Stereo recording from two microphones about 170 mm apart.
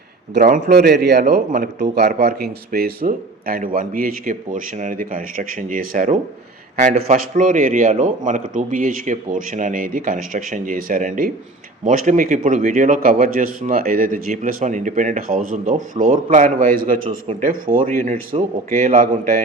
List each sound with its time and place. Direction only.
0.3 s a man's voice: 70° right (ahead or behind)
1.3 s a man's voice: 60° right (ahead or behind)